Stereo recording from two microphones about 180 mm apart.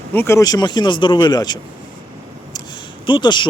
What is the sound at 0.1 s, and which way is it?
Speech, 10° left (ahead or behind).